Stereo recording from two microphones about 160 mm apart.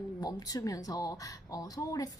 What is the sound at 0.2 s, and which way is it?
Speech, 25° left (ahead or behind).